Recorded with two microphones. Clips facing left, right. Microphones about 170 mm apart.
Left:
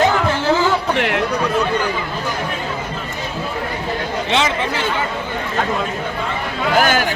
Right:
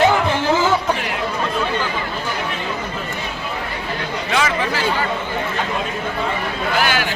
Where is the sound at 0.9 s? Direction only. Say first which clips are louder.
Left 7 dB; 65° left (ahead or behind).